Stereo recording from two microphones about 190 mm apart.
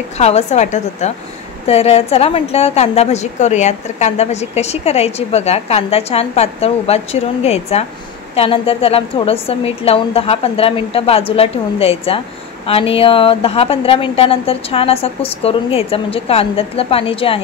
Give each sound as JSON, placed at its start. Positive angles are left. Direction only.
{"t": 0.2, "sound": "a woman's voice", "side_deg": 35}